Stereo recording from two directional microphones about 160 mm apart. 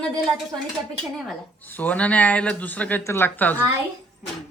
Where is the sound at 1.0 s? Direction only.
5° left (ahead or behind).